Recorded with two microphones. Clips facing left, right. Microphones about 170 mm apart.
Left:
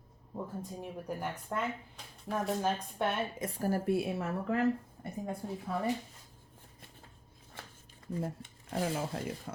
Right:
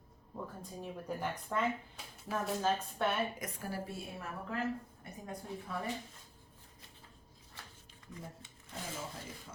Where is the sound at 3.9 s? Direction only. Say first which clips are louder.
Left 13 dB; 75° left (ahead or behind).